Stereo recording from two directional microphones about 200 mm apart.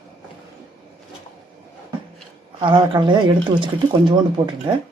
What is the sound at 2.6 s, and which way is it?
Speech, 25° right (ahead or behind).